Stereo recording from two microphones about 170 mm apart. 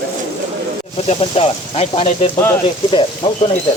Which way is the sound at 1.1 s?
35° left (ahead or behind).